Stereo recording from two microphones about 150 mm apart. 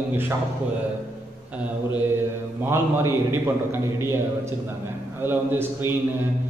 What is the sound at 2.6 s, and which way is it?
Speech, 15° right (ahead or behind).